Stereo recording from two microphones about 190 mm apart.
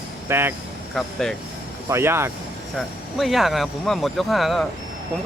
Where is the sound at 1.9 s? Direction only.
15° right (ahead or behind).